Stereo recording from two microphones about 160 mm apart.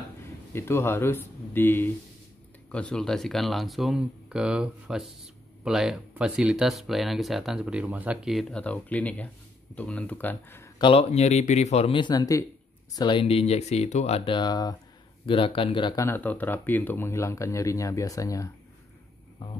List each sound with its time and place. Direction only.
0.5 s speech: 15° left (ahead or behind)
10.8 s speech: 35° left (ahead or behind)
16.1 s speech: 10° left (ahead or behind)